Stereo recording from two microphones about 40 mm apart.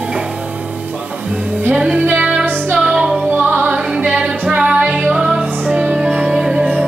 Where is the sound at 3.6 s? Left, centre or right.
Right.